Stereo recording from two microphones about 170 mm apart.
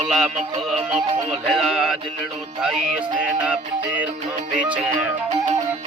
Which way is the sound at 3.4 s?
10° right (ahead or behind).